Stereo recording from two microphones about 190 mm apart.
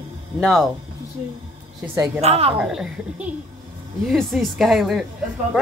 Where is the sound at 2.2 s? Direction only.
30° right (ahead or behind).